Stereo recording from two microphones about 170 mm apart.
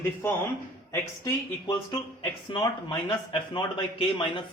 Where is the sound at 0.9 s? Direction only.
15° left (ahead or behind).